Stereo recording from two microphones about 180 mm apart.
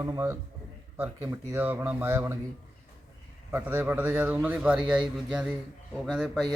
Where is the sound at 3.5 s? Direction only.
15° right (ahead or behind).